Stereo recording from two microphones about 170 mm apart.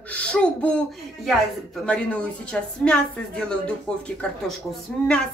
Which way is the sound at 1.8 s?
5° left (ahead or behind).